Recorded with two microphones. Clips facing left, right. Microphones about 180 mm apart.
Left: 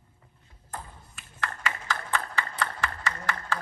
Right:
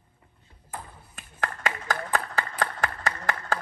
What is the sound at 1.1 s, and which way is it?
Clapping, 45° right (ahead or behind).